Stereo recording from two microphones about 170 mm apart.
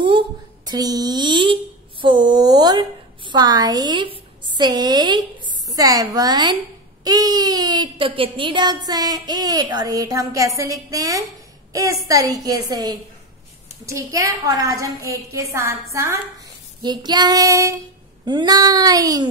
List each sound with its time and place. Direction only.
0.7 s a woman's voice: 20° right (ahead or behind)